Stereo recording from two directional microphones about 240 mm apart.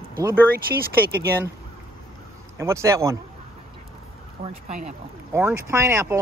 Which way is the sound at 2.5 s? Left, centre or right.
Centre.